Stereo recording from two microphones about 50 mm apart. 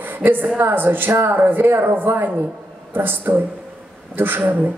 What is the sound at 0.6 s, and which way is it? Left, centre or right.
A man's voice, right.